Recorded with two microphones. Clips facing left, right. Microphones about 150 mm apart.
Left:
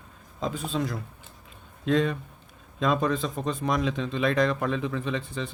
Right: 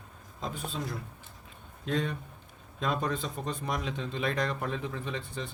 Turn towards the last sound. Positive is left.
turn(degrees=90)